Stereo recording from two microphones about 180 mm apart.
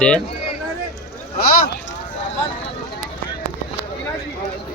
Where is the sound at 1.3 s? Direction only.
55° left (ahead or behind).